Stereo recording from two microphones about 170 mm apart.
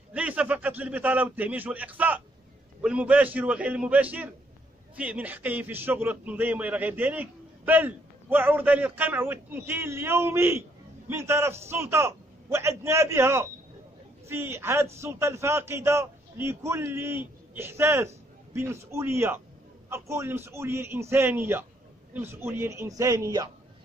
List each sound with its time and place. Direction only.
0.1 s a man's voice: 10° right (ahead or behind)